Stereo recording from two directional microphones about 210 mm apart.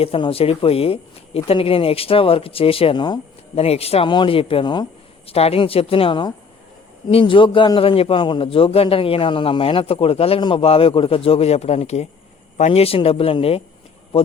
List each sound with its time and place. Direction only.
0.0 s a man's voice: 25° left (ahead or behind)